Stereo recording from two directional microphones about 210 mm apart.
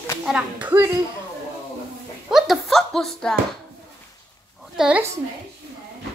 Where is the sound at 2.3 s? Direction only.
Centre (ahead or behind).